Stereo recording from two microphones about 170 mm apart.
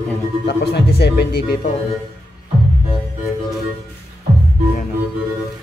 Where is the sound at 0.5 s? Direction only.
75° left (ahead or behind).